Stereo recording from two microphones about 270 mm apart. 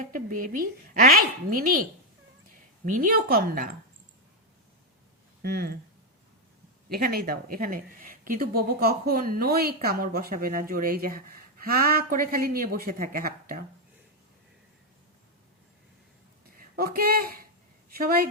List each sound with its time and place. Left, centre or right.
0.0 s speech: right
5.4 s speech: right
6.8 s speech: right
16.7 s speech: right